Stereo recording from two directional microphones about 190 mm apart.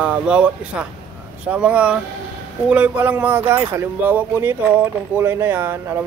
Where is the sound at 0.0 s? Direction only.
5° right (ahead or behind).